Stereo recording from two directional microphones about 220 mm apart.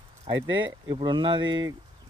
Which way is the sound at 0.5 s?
20° right (ahead or behind).